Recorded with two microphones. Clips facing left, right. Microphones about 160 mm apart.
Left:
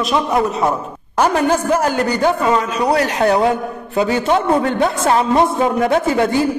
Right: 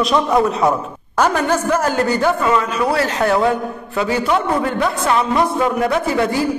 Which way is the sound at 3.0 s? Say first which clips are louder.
Left 1 dB; 20° left (ahead or behind).